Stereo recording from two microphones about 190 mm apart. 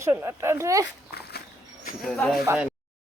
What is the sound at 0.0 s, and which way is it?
Speech, 15° right (ahead or behind).